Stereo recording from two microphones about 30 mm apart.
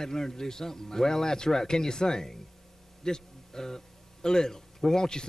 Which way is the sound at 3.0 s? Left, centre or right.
Centre.